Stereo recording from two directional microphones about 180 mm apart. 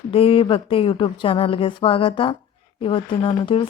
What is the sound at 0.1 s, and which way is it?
A woman's voice, 30° left (ahead or behind).